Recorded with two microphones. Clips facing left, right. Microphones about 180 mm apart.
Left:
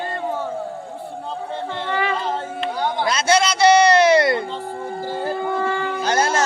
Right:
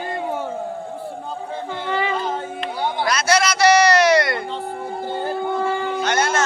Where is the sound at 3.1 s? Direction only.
25° left (ahead or behind).